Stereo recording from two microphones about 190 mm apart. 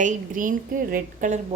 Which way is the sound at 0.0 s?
45° right (ahead or behind).